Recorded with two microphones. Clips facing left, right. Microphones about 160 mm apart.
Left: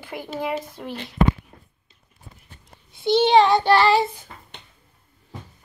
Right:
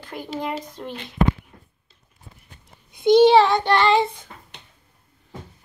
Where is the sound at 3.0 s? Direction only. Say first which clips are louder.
Right 6 dB; 45° right (ahead or behind).